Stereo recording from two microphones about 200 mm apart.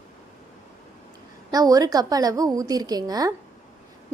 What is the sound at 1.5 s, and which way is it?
A woman's voice, 20° right (ahead or behind).